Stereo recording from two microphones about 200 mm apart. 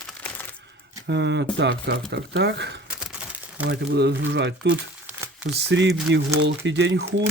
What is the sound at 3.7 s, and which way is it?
Speech, 55° right (ahead or behind).